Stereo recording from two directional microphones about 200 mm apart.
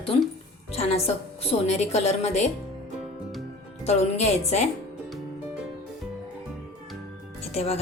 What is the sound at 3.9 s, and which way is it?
Speech, 30° left (ahead or behind).